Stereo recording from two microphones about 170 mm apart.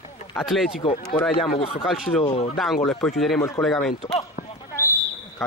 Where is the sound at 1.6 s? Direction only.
35° left (ahead or behind).